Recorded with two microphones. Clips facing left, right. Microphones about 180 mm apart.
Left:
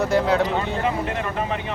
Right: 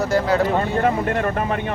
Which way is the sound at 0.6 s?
50° right (ahead or behind).